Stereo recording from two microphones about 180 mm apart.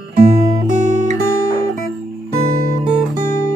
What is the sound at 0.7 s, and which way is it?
Music, 40° right (ahead or behind).